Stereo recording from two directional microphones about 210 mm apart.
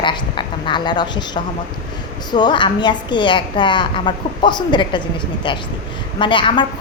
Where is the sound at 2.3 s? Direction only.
20° left (ahead or behind).